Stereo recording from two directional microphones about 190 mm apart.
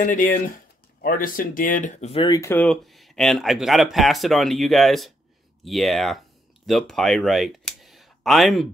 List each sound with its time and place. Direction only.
0.0 s speech: 45° left (ahead or behind); by 8.6 s centre (ahead or behind)